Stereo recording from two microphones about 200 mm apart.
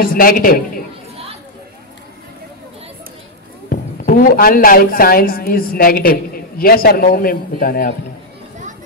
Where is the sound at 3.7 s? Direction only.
45° left (ahead or behind).